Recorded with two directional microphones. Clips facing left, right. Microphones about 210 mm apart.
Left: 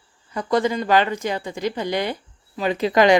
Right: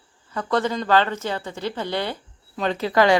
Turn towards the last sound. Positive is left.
turn(degrees=15)  # may be behind; listen again after turning